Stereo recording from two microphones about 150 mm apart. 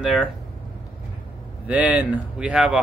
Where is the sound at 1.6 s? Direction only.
10° right (ahead or behind).